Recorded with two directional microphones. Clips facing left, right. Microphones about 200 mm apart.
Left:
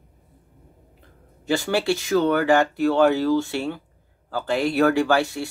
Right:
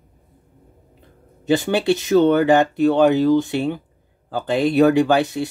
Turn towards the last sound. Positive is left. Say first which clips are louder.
# right 4 dB
turn(degrees=-20)  # may be behind; listen again after turning